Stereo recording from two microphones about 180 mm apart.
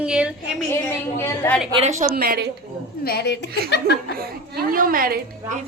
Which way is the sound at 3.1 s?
60° left (ahead or behind).